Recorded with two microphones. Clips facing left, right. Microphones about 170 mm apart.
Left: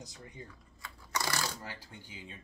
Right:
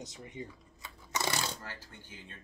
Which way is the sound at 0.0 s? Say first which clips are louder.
Right 5 dB; 20° right (ahead or behind).